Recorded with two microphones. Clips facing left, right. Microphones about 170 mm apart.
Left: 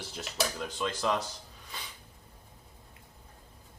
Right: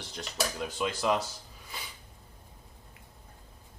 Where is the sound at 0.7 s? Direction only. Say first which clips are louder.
Right 2 dB; 10° right (ahead or behind).